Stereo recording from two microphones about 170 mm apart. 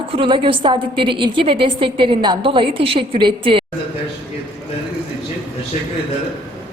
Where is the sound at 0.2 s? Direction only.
30° right (ahead or behind).